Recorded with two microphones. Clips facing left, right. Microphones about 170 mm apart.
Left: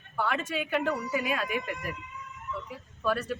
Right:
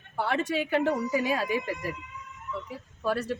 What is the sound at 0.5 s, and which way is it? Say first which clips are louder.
Speech: right 5 dB; 30° right (ahead or behind).